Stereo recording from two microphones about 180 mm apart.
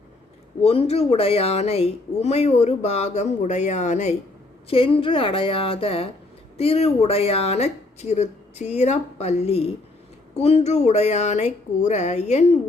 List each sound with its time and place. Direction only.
0.6 s speech: 35° left (ahead or behind)
4.7 s speech: 30° left (ahead or behind)